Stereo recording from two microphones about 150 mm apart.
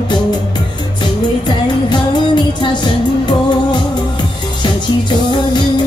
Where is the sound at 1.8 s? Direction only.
30° left (ahead or behind).